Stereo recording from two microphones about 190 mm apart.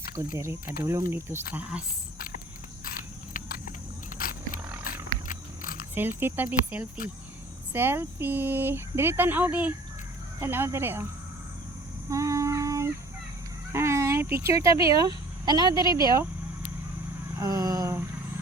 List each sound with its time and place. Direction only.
0.8 s speech: 15° right (ahead or behind)
2.9 s a sound: 45° left (ahead or behind)
5.9 s speech: 10° right (ahead or behind)
12.0 s humming: 15° right (ahead or behind)
13.7 s speech: 15° right (ahead or behind)
17.4 s a sound: 20° right (ahead or behind)